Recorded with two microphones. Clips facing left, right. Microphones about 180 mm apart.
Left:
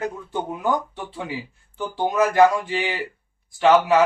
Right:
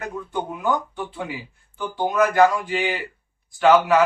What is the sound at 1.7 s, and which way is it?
Speech, 25° left (ahead or behind).